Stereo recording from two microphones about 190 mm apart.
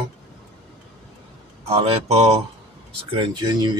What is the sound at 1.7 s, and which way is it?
Speech, 35° right (ahead or behind).